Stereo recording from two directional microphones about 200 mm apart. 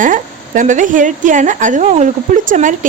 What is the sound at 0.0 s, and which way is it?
A woman's voice, 40° right (ahead or behind).